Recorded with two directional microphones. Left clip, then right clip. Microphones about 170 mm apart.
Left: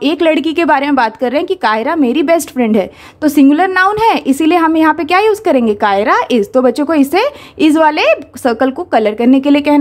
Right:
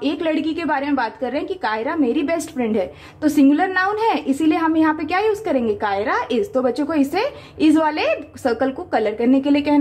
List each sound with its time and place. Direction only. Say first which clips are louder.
0.0 s a woman's voice: left 9 dB; 35° left (ahead or behind)